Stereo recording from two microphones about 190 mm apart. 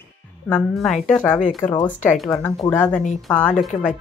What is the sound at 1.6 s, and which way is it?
Speech, 25° left (ahead or behind).